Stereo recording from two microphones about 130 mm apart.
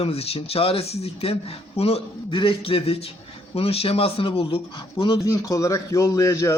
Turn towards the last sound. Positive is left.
turn(degrees=25)  # may be behind; listen again after turning